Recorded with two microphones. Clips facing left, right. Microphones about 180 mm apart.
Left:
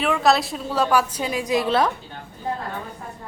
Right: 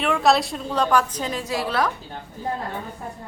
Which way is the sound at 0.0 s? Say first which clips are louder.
Even; centre (ahead or behind).